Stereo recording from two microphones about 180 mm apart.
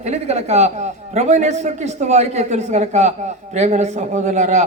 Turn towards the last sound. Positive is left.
turn(degrees=-40)  # may be behind; listen again after turning